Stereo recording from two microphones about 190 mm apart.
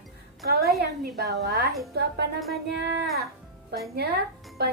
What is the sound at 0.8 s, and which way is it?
A woman's voice, 55° right (ahead or behind).